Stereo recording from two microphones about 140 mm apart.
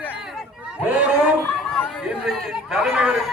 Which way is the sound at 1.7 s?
5° left (ahead or behind).